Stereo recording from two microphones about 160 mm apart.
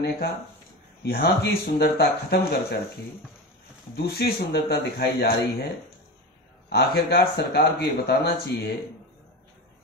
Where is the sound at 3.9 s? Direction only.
85° left.